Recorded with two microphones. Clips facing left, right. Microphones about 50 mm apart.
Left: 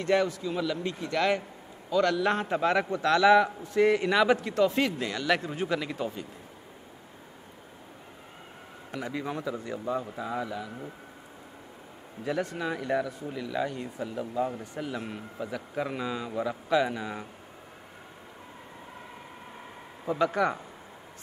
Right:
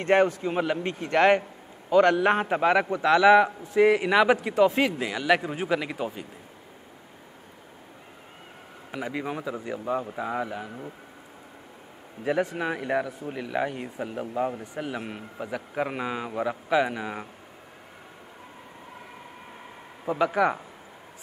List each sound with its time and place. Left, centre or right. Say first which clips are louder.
0.0 s a man's voice: right 4 dB; right
2.3 s a man's voice: right 4 dB; right
8.9 s speech: right 2 dB; right
12.3 s a man's voice: right 4 dB; right
14.5 s speech: right 2 dB; centre
20.1 s a man's voice: right 3 dB; centre